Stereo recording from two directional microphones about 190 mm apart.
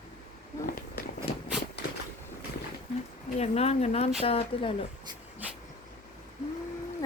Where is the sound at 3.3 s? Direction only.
35° left (ahead or behind).